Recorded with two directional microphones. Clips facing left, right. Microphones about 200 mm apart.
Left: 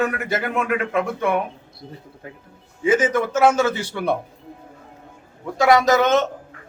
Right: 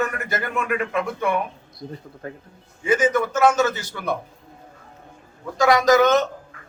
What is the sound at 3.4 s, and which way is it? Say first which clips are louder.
Speech: left 1 dB; 25° left (ahead or behind).